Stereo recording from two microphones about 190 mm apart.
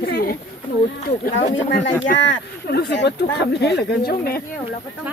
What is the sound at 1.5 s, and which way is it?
Speech, 75° left (ahead or behind).